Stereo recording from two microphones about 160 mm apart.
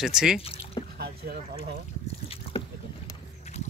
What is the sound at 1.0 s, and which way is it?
Speech, 75° right (ahead or behind).